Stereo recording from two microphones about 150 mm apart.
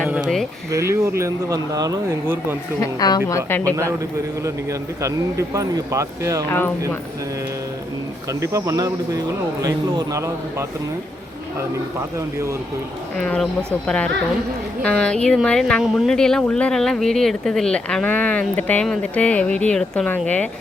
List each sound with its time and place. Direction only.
0.0 s a sound: centre (ahead or behind)
0.7 s speech: 20° right (ahead or behind)
2.8 s a woman's voice: 25° left (ahead or behind)
5.0 s speech: 20° right (ahead or behind)
6.5 s speech: 15° left (ahead or behind)
8.3 s speech: 20° right (ahead or behind)
13.1 s speech: 5° left (ahead or behind)